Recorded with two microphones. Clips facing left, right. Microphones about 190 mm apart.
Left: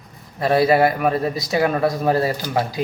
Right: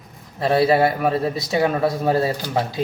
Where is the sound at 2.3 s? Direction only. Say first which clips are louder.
Left 1 dB; 10° left (ahead or behind).